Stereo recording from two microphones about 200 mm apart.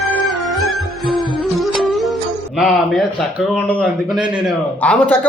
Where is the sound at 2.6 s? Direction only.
Centre (ahead or behind).